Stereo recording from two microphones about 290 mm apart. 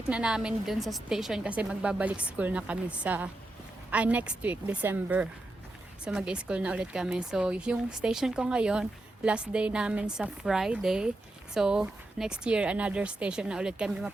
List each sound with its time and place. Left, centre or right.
0.1 s speech: centre